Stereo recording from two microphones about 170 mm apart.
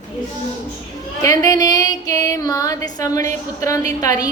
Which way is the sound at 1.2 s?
20° left (ahead or behind).